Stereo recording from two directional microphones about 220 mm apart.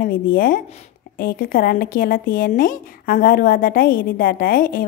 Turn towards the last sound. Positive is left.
turn(degrees=40)  # may be behind; listen again after turning